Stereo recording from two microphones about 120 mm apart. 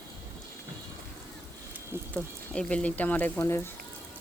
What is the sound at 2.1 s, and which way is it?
Speech, 10° left (ahead or behind).